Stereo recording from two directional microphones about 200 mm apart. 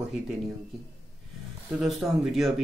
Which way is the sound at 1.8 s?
Centre (ahead or behind).